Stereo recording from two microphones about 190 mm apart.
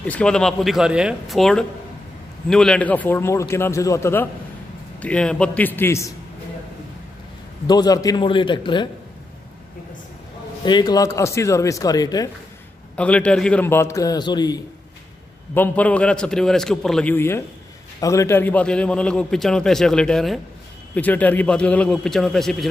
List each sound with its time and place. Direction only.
0.0 s a man's voice: 5° left (ahead or behind)
7.6 s speech: 20° left (ahead or behind)
10.6 s speech: 20° left (ahead or behind)
12.9 s a man's voice: 5° left (ahead or behind); by 14.6 s 20° left (ahead or behind)
15.5 s a man's voice: 10° left (ahead or behind)